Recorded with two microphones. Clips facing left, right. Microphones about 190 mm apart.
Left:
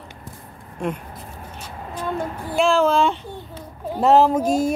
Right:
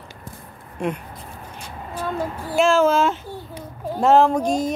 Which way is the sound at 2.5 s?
Centre (ahead or behind).